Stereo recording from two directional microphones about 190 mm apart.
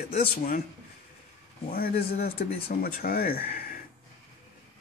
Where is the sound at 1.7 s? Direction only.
50° left (ahead or behind).